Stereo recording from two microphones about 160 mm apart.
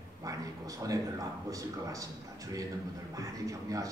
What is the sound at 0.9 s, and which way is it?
A man's voice, 20° right (ahead or behind).